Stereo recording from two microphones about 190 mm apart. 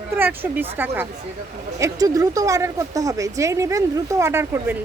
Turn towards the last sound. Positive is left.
turn(degrees=-15)  # may be behind; listen again after turning